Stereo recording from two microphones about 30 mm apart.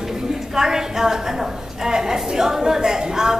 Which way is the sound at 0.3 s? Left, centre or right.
Centre.